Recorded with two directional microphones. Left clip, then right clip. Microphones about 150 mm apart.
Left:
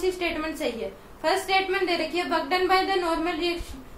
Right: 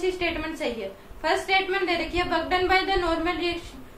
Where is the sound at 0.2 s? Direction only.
5° left (ahead or behind).